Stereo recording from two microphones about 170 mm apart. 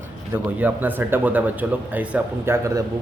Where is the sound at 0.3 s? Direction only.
10° right (ahead or behind).